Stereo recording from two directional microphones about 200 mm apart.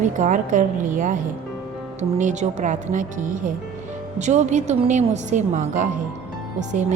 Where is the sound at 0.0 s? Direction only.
40° right (ahead or behind).